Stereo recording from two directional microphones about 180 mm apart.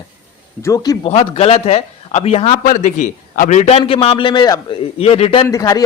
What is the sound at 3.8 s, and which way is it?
A man's voice, 30° left (ahead or behind).